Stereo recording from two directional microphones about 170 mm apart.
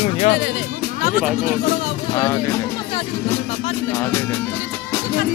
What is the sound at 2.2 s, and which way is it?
Speech, 15° left (ahead or behind).